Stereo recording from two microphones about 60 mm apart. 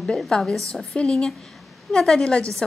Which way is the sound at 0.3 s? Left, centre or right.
Centre.